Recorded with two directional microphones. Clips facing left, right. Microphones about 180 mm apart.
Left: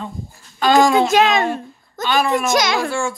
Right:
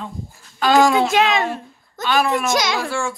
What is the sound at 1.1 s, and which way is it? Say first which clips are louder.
Speech: left 2 dB; 40° left (ahead or behind).